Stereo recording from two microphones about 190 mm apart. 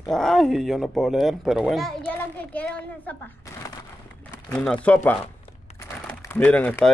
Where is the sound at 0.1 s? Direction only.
Centre (ahead or behind).